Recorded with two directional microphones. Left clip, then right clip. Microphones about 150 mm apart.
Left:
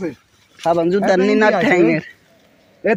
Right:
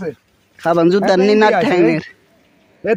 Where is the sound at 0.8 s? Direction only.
45° right (ahead or behind).